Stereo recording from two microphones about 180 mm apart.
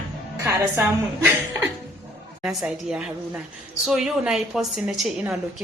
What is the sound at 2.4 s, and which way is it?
A woman's voice, 5° right (ahead or behind).